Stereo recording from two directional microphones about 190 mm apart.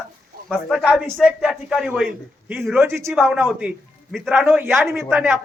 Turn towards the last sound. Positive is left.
turn(degrees=-10)  # may be behind; listen again after turning